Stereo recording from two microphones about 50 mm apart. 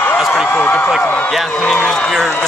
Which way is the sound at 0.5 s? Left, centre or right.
Left.